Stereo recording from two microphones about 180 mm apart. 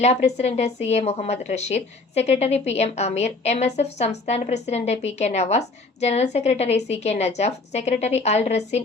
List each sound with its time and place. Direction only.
0.0 s a woman's voice: 40° left (ahead or behind)